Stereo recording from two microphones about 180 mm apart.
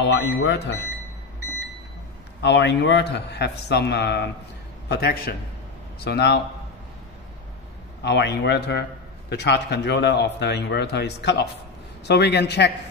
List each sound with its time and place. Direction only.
0.0 s a man's voice: 70° left (ahead or behind)
2.4 s a man's voice: 80° left
8.0 s a man's voice: 70° left (ahead or behind)